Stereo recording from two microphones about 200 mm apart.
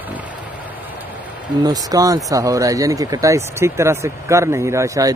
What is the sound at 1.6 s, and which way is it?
Speech, 20° right (ahead or behind).